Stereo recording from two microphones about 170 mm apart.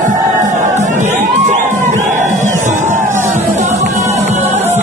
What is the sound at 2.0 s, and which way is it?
Music, 45° right (ahead or behind).